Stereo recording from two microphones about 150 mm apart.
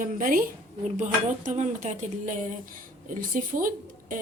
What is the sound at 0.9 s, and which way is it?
Speech, 55° right (ahead or behind).